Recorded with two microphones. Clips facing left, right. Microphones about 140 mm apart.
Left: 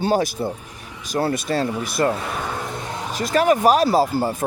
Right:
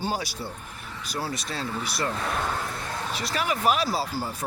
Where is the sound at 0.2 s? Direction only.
50° left (ahead or behind).